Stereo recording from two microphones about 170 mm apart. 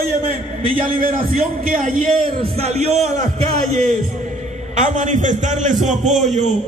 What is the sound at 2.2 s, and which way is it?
A man's voice, 35° right (ahead or behind).